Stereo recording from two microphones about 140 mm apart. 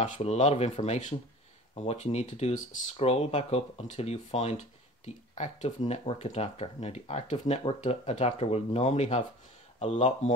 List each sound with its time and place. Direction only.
0.0 s speech: 50° left (ahead or behind)